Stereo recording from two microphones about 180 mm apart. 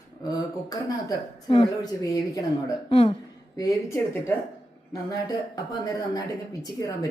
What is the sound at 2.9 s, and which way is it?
Speech, 35° left (ahead or behind).